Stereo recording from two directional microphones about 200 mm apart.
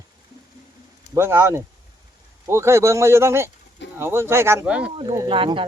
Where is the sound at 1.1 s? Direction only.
10° right (ahead or behind).